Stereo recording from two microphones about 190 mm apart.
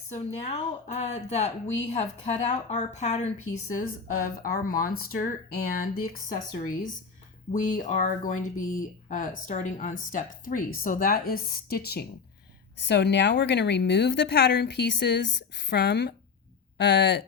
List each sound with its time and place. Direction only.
0.1 s a woman's voice: 35° left (ahead or behind)
4.4 s a woman's voice: 50° left (ahead or behind); by 17.2 s 65° left (ahead or behind)